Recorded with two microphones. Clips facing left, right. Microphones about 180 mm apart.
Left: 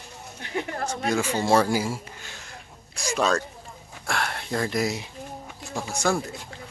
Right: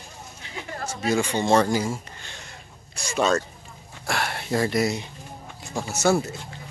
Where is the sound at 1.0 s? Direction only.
Centre (ahead or behind).